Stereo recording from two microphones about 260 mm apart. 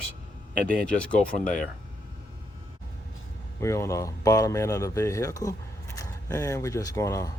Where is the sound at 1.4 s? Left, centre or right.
Left.